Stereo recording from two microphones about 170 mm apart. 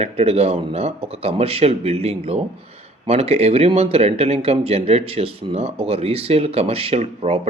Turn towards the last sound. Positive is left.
turn(degrees=-35)  # may be behind; listen again after turning